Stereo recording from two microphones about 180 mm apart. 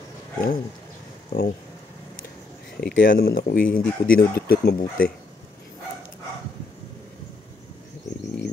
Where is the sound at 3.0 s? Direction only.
50° left (ahead or behind).